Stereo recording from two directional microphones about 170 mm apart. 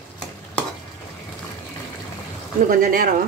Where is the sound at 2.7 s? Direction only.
60° right (ahead or behind).